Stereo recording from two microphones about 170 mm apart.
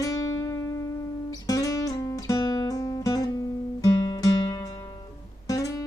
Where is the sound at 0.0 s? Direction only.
20° left (ahead or behind).